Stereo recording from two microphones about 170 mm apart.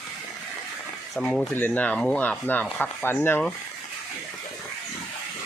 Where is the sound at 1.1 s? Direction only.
5° left (ahead or behind).